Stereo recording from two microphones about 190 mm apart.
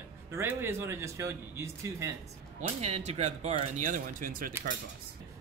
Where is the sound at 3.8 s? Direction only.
45° right (ahead or behind).